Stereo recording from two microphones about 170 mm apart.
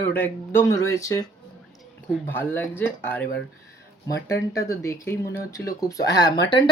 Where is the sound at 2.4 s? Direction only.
10° left (ahead or behind).